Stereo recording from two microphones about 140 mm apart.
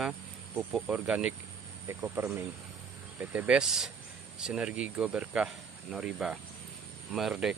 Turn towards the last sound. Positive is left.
turn(degrees=-5)  # may be behind; listen again after turning